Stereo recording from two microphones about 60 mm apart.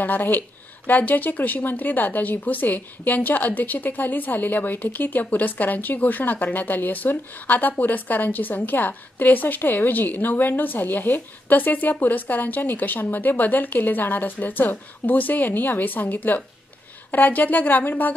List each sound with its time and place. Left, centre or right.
0.0 s speech: left